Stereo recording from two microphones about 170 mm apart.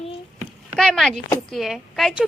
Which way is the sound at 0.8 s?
Centre (ahead or behind).